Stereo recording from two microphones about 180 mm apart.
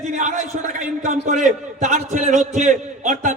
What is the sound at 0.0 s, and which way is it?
A man's voice, 45° right (ahead or behind).